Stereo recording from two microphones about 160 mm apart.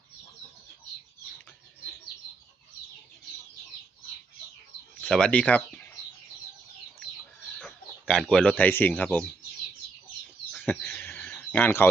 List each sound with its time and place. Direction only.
4.9 s speech: 5° left (ahead or behind)
7.4 s chicken: 5° left (ahead or behind)
10.5 s a sound: 10° left (ahead or behind)